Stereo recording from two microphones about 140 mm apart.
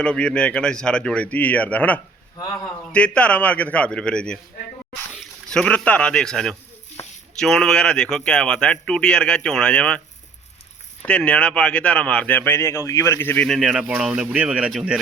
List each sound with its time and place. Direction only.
0.0 s speech: 5° left (ahead or behind)
2.4 s a man's voice: 25° left (ahead or behind)
2.9 s speech: 10° left (ahead or behind)
11.0 s speech: 10° left (ahead or behind)
13.5 s speech: 5° right (ahead or behind)